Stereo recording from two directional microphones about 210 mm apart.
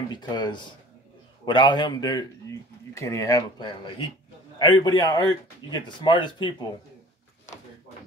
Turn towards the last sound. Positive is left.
turn(degrees=20)  # may be behind; listen again after turning